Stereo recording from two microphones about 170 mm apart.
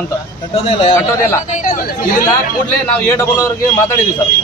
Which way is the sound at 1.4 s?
45° left (ahead or behind).